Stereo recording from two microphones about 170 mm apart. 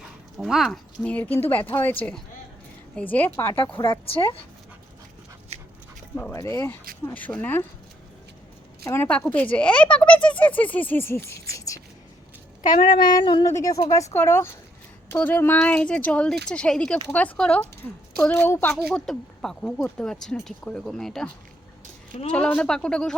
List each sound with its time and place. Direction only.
0.3 s speech: centre (ahead or behind)
3.5 s speech: 30° left (ahead or behind)
6.3 s speech: 15° left (ahead or behind)
8.8 s speech: 10° left (ahead or behind)
11.5 s whispering: 20° left (ahead or behind)
13.0 s speech: 25° left (ahead or behind)
18.7 s speech: 5° right (ahead or behind)
22.3 s speech: 5° left (ahead or behind)